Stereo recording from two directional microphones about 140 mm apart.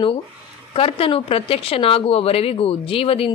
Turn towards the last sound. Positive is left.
turn(degrees=40)  # may be behind; listen again after turning